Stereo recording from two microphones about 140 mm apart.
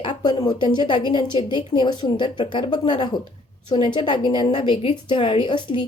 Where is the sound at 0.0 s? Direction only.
30° left (ahead or behind).